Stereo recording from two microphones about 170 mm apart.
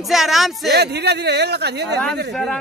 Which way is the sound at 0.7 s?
75° right (ahead or behind).